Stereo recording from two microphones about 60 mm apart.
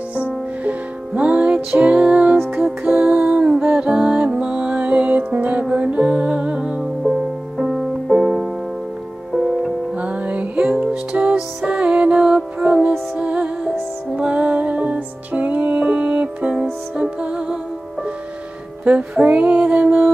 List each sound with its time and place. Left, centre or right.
0.7 s music: right
3.2 s music: centre
9.9 s music: right
18.9 s music: right